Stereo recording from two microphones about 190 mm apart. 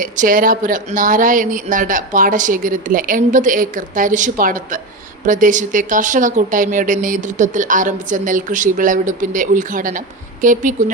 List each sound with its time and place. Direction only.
0.0 s speech: 45° right (ahead or behind)